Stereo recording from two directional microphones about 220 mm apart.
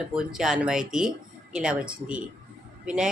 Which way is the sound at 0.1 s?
5° right (ahead or behind).